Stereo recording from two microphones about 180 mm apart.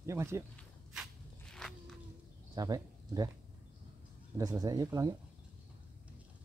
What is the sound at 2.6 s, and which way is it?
Speech, 20° right (ahead or behind).